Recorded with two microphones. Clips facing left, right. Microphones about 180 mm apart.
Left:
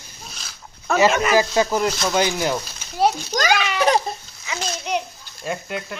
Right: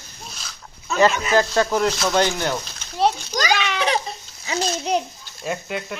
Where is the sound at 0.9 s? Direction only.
60° left (ahead or behind).